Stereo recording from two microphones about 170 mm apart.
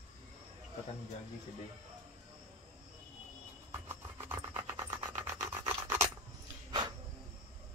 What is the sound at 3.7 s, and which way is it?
Filing, 15° right (ahead or behind).